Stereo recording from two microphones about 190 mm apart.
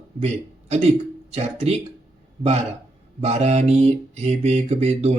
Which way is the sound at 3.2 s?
35° right (ahead or behind).